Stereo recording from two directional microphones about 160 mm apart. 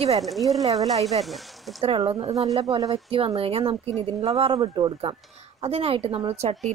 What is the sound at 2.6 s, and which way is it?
Speech, 20° right (ahead or behind).